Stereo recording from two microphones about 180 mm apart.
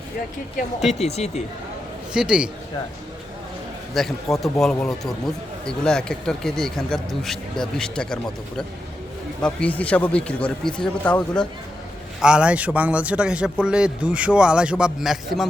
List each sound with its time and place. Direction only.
0.9 s speech: 35° left (ahead or behind)
2.1 s a man's voice: 5° right (ahead or behind)
3.9 s a man's voice: centre (ahead or behind)
12.2 s a man's voice: 5° right (ahead or behind)